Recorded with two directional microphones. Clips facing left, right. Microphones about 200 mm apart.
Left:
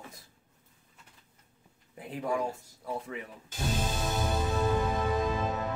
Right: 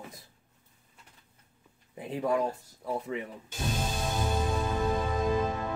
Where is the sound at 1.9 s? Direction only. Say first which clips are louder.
Right 3 dB; 20° right (ahead or behind).